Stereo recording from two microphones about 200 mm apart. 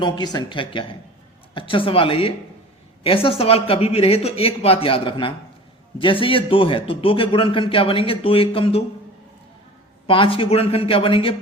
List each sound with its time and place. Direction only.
0.0 s a man's voice: 20° left (ahead or behind)
10.1 s a man's voice: 25° left (ahead or behind)